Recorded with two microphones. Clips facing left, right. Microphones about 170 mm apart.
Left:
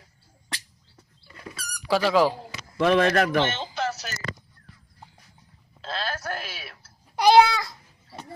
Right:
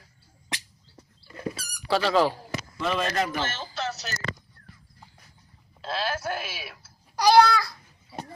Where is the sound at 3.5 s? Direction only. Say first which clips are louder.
Left 3 dB; 20° left (ahead or behind).